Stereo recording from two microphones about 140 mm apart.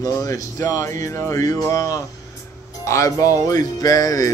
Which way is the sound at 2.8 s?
20° left (ahead or behind).